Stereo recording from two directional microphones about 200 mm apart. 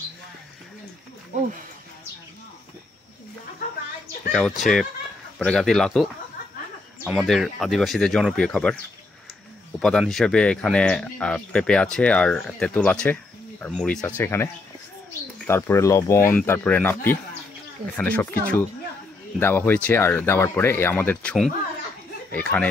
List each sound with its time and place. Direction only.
1.3 s speech: 40° right (ahead or behind)
4.3 s speech: centre (ahead or behind)
7.1 s speech: centre (ahead or behind)
9.8 s speech: 5° left (ahead or behind)